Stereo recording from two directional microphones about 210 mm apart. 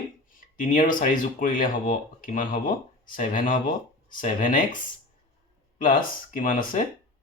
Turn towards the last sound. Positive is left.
turn(degrees=40)  # may be behind; listen again after turning